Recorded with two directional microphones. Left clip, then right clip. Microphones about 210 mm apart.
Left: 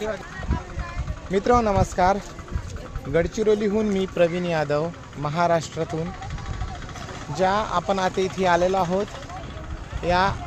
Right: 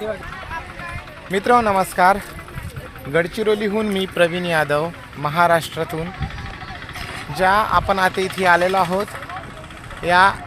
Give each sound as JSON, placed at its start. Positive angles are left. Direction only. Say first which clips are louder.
{"t": 1.3, "sound": "speech", "louder": "right 4 dB", "side_deg": 5}
{"t": 7.3, "sound": "speech", "louder": "right 6 dB", "side_deg": 5}
{"t": 10.0, "sound": "speech", "louder": "right 7 dB", "side_deg": 0}